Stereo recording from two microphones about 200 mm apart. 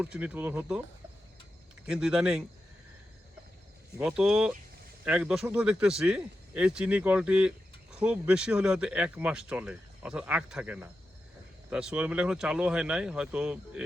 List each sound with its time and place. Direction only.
0.0 s speech: 5° right (ahead or behind)
1.9 s speech: 5° right (ahead or behind)
3.9 s speech: 5° right (ahead or behind)